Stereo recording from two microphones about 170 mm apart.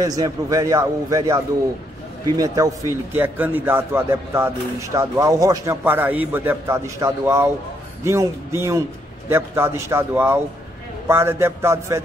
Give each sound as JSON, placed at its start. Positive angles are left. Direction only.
{"t": 0.0, "sound": "a man's voice", "side_deg": -20}